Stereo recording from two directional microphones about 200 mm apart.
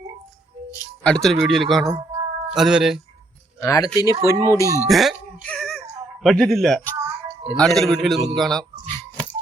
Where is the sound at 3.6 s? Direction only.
15° left (ahead or behind).